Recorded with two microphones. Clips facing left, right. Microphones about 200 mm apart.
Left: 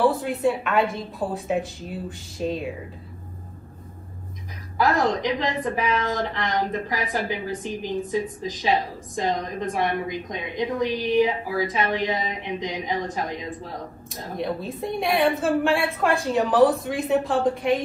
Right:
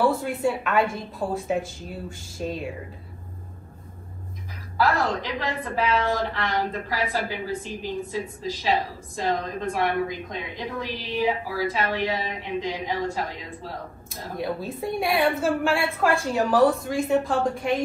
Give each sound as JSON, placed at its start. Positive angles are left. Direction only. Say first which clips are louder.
{"t": 0.0, "sound": "a woman's voice", "louder": "left 2 dB", "side_deg": 0}
{"t": 4.7, "sound": "a woman's voice", "louder": "left 2 dB", "side_deg": 20}
{"t": 14.3, "sound": "a woman's voice", "louder": "left 1 dB", "side_deg": -5}